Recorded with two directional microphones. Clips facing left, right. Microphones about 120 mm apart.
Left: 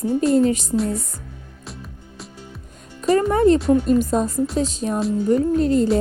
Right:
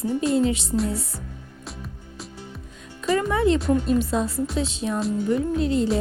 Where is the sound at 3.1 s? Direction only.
40° left (ahead or behind).